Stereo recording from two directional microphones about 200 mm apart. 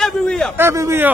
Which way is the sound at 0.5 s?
15° right (ahead or behind).